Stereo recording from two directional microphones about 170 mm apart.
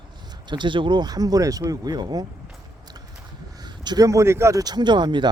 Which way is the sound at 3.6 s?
25° right (ahead or behind).